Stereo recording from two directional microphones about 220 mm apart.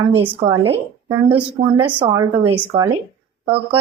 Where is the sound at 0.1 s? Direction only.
20° right (ahead or behind).